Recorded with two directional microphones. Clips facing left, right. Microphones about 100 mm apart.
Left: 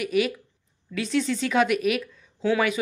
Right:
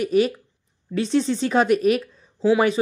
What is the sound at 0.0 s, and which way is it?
A woman's voice, 35° right (ahead or behind).